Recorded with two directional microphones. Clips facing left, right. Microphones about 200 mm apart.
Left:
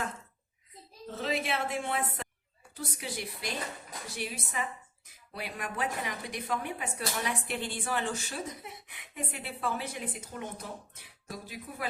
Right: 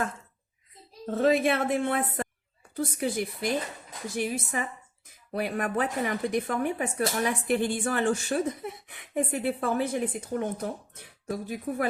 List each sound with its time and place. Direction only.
1.0 s speech: 50° right (ahead or behind)